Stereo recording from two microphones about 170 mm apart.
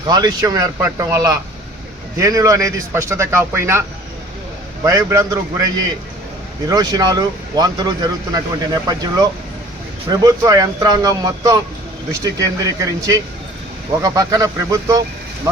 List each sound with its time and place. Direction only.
0.0 s speech: 25° right (ahead or behind)